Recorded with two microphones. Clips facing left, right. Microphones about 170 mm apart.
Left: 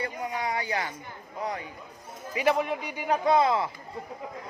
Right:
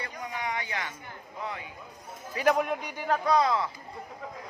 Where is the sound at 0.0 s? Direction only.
30° left (ahead or behind).